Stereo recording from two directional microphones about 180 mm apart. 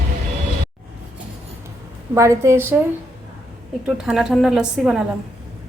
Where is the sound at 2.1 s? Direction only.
15° right (ahead or behind).